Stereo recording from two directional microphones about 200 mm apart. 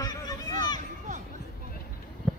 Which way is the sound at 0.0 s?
20° left (ahead or behind).